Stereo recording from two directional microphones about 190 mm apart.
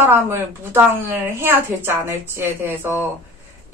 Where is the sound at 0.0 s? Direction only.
10° right (ahead or behind).